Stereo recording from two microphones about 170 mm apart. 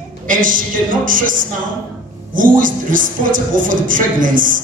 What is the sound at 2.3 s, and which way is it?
A woman's voice, 50° right (ahead or behind).